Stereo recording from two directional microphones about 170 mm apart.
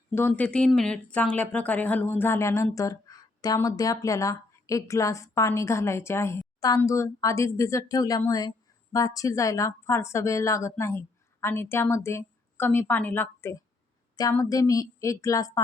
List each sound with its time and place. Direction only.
0.1 s speech: 15° left (ahead or behind)